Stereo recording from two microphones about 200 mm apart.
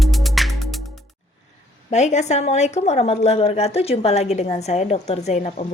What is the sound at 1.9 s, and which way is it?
A woman's voice, 35° left (ahead or behind).